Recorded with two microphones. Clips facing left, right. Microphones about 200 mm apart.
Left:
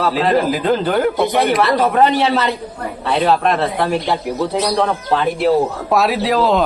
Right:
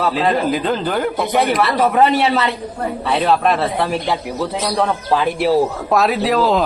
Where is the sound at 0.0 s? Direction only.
Centre (ahead or behind).